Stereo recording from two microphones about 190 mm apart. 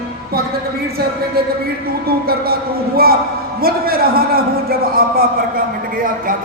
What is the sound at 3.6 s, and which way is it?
A man's voice, 50° right (ahead or behind).